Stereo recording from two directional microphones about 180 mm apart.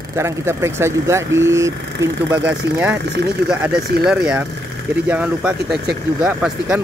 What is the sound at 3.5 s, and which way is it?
Speech, 5° right (ahead or behind).